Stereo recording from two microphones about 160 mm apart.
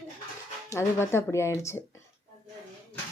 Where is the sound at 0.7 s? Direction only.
15° left (ahead or behind).